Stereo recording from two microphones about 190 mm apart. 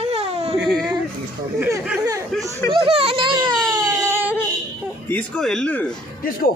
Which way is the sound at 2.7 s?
30° right (ahead or behind).